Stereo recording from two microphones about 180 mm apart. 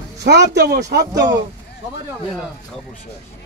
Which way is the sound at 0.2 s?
70° right (ahead or behind).